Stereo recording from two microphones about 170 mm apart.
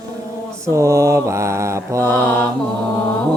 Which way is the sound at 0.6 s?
15° right (ahead or behind).